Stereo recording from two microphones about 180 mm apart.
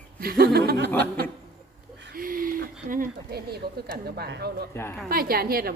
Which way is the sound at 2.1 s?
50° right (ahead or behind).